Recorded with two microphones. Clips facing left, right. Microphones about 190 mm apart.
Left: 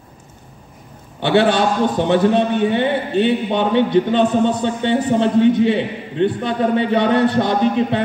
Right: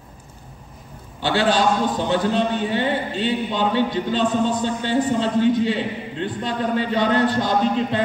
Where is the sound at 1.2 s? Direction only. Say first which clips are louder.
Left 4 dB; 60° left (ahead or behind).